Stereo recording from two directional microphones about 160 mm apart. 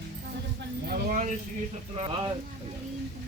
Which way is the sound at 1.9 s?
35° right (ahead or behind).